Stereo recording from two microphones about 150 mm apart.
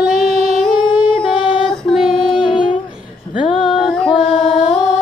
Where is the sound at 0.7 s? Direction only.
30° left (ahead or behind).